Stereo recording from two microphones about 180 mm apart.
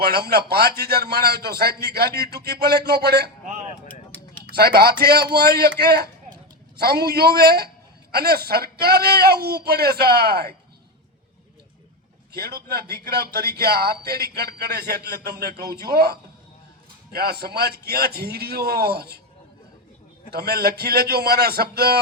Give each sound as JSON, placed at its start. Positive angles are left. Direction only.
{"t": 0.0, "sound": "a man's voice", "side_deg": -60}
{"t": 4.5, "sound": "a man's voice", "side_deg": -60}
{"t": 12.3, "sound": "a man's voice", "side_deg": -60}
{"t": 20.3, "sound": "a man's voice", "side_deg": -60}